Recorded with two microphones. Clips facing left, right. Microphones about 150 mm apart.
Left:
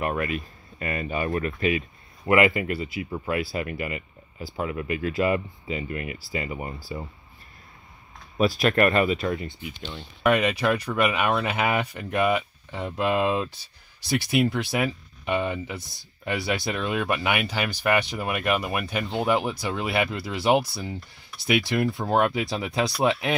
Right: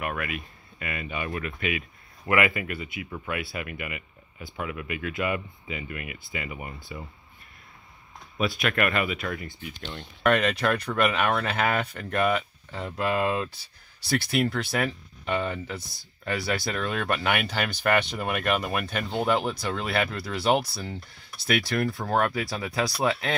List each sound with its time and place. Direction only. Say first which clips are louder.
0.0 s speech: left 5 dB; 35° left (ahead or behind)
8.4 s speech: left 5 dB; 35° left (ahead or behind)
9.3 s speech: left 5 dB; 20° left (ahead or behind)
9.8 s speech: left 1 dB; 10° left (ahead or behind)